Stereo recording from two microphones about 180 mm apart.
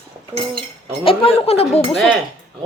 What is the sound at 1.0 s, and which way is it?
Speech, 30° left (ahead or behind).